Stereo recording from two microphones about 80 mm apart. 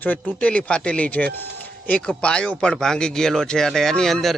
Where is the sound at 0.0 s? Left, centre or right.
Left.